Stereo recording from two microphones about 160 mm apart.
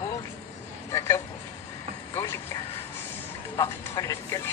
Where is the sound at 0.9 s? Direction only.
15° left (ahead or behind).